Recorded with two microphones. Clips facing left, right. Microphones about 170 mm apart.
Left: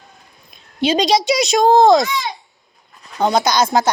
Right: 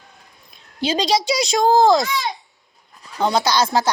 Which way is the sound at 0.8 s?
20° left (ahead or behind).